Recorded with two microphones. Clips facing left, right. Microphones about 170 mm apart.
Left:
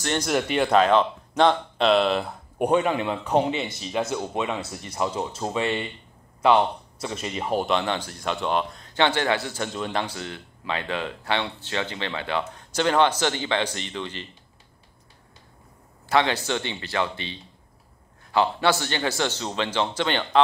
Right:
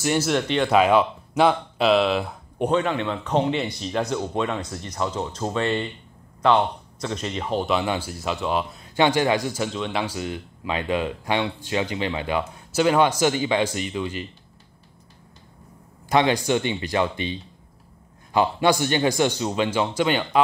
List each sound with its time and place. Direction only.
0.0 s speech: 10° right (ahead or behind)
0.3 s a man's voice: 5° left (ahead or behind)
0.7 s speech: 10° right (ahead or behind)
2.6 s a man's voice: 10° left (ahead or behind)
7.6 s speech: 5° right (ahead or behind)
9.7 s speech: centre (ahead or behind)
16.1 s speech: 15° right (ahead or behind)